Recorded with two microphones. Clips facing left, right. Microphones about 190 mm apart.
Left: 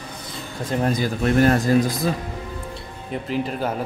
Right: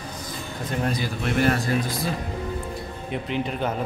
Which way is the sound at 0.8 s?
40° left (ahead or behind).